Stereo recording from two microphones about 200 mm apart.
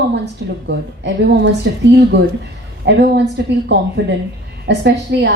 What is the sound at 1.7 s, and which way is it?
Speech, 60° right (ahead or behind).